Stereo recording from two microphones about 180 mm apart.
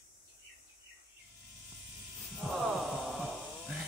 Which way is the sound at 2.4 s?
Centre (ahead or behind).